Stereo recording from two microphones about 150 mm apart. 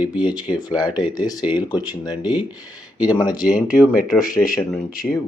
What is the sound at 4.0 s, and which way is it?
Speech, 70° left (ahead or behind).